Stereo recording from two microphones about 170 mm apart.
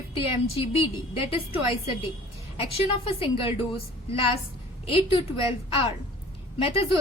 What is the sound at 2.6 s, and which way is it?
Speech, 35° left (ahead or behind).